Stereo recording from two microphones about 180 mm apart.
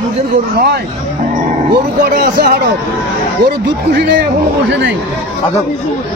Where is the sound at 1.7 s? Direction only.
60° right (ahead or behind).